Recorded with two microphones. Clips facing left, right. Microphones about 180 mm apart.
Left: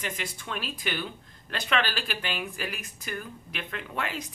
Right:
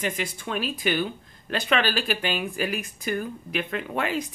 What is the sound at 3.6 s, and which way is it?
Speech, 20° right (ahead or behind).